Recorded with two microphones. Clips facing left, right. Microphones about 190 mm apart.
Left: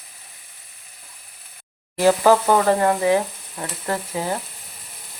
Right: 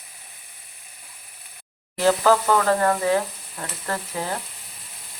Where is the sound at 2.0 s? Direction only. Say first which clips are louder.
Left 3 dB; 15° left (ahead or behind).